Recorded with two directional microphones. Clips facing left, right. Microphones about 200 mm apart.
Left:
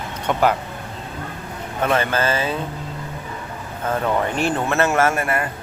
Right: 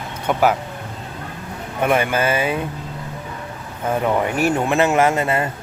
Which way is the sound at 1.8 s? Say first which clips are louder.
Right 2 dB; 10° right (ahead or behind).